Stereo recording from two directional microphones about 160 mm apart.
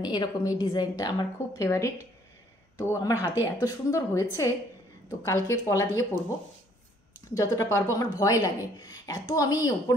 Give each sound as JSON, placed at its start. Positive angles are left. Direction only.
{"t": 0.0, "sound": "a woman's voice", "side_deg": 25}
{"t": 7.3, "sound": "a woman's voice", "side_deg": 20}